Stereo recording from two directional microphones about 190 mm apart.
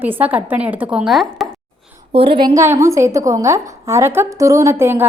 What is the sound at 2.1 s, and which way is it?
A woman's voice, 30° right (ahead or behind).